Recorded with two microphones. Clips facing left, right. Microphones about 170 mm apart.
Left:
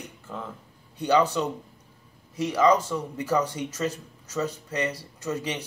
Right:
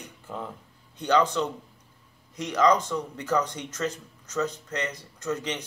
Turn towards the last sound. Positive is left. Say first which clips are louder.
# even
turn(degrees=10)  # may be behind; listen again after turning